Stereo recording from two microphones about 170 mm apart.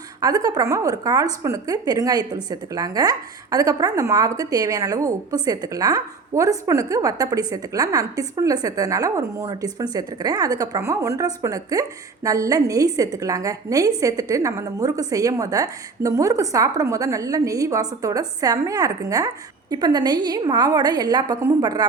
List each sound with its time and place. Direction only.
0.2 s a woman's voice: 20° right (ahead or behind)